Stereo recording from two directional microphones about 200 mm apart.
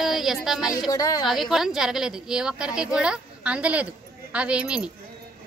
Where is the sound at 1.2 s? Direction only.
Centre (ahead or behind).